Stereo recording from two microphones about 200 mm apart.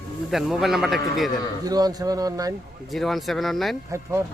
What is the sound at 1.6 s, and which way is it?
Speech, 20° right (ahead or behind).